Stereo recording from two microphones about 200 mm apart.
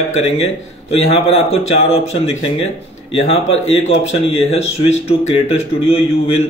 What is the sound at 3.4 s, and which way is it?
Speech, 75° left (ahead or behind).